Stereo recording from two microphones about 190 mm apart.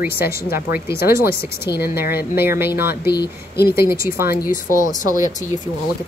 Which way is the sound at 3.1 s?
60° left (ahead or behind).